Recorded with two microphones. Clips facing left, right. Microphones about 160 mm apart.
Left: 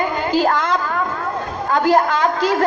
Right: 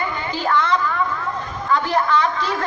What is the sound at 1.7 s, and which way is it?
Speech, 45° left (ahead or behind).